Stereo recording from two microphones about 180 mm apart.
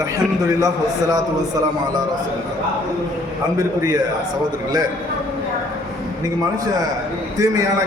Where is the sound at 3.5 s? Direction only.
20° right (ahead or behind).